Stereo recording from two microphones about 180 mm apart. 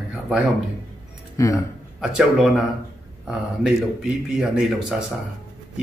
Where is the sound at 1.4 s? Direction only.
20° left (ahead or behind).